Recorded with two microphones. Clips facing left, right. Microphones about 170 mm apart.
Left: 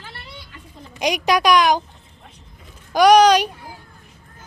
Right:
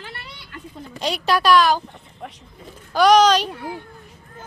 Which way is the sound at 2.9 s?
15° left (ahead or behind).